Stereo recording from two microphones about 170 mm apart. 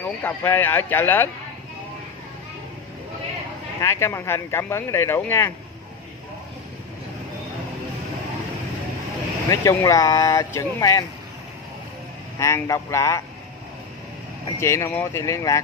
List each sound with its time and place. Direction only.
0.0 s speech: 10° left (ahead or behind)
3.8 s speech: 15° left (ahead or behind)
9.5 s speech: 20° left (ahead or behind)
12.4 s speech: 15° left (ahead or behind)
14.6 s speech: 15° left (ahead or behind)